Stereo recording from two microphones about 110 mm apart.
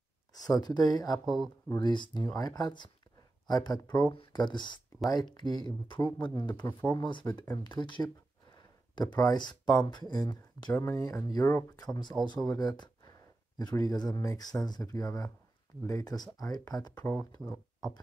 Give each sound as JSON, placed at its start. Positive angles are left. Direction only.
{"t": 0.3, "sound": "speech", "side_deg": 35}
{"t": 1.2, "sound": "speech", "side_deg": 0}
{"t": 1.8, "sound": "speech", "side_deg": 40}
{"t": 4.1, "sound": "speech", "side_deg": 45}
{"t": 8.5, "sound": "a sound", "side_deg": 40}
{"t": 9.8, "sound": "speech", "side_deg": 45}
{"t": 17.0, "sound": "speech", "side_deg": 15}
{"t": 17.4, "sound": "speech", "side_deg": 5}